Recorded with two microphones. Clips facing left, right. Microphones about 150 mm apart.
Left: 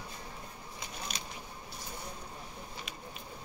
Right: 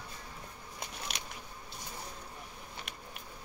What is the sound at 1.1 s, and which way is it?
Biting, 75° right (ahead or behind).